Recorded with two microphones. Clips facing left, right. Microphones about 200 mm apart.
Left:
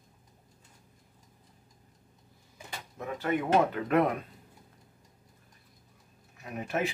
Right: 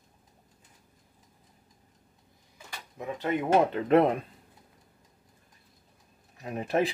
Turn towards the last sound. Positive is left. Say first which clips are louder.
# right 5 dB
turn(degrees=-35)  # may be behind; listen again after turning